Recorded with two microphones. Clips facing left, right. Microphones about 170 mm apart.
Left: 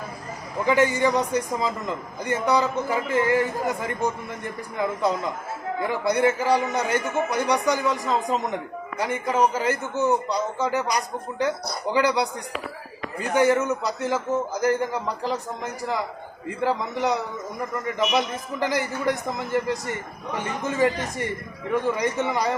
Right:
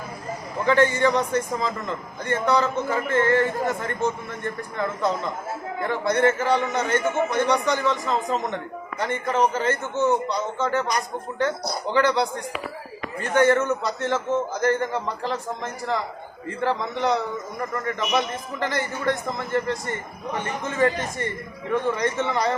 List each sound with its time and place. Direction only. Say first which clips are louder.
0.6 s a man's voice: right 1 dB; 15° left (ahead or behind)
11.6 s speech: right 1 dB; centre (ahead or behind)
11.9 s a man's voice: right 1 dB; 10° left (ahead or behind)
16.5 s a man's voice: even; 10° left (ahead or behind)
18.6 s a man's voice: left 1 dB; 10° left (ahead or behind)